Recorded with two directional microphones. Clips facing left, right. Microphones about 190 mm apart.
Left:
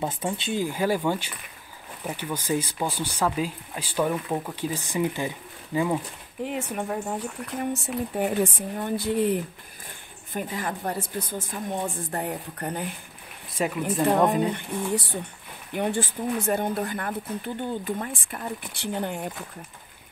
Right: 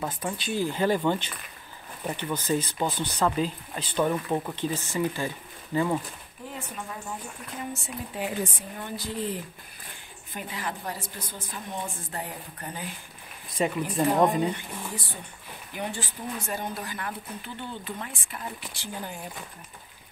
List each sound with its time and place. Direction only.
0.0 s speech: 25° left (ahead or behind)
6.4 s speech: 70° left (ahead or behind)
7.7 s speech: 60° left (ahead or behind)
10.3 s a woman's voice: 45° left (ahead or behind)
13.6 s speech: centre (ahead or behind)
15.7 s speech: 55° left (ahead or behind)